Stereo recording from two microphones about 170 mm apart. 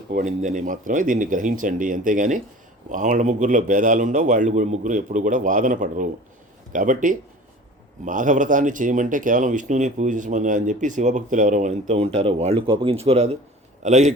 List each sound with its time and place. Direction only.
0.1 s speech: 50° right (ahead or behind)